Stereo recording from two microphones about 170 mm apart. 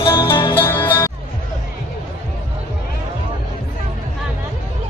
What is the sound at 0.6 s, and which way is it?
Music, 10° left (ahead or behind).